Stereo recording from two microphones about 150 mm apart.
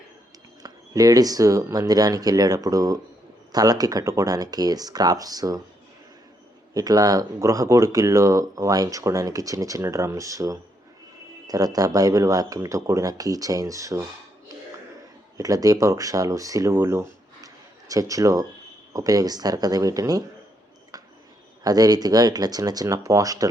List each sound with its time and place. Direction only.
0.6 s speech: 25° right (ahead or behind)
6.7 s speech: 25° right (ahead or behind)
15.4 s speech: 25° right (ahead or behind)
21.6 s speech: 25° right (ahead or behind)